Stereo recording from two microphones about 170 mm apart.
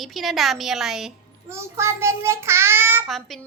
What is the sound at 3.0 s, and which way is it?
Speech, centre (ahead or behind).